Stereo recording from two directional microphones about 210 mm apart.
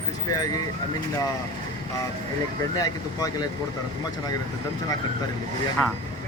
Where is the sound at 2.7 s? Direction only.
15° left (ahead or behind).